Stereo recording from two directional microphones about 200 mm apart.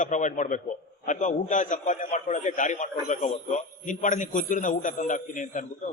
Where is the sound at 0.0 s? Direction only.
40° left (ahead or behind).